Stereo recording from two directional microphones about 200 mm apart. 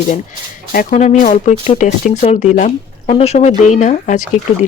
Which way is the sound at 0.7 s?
35° left (ahead or behind).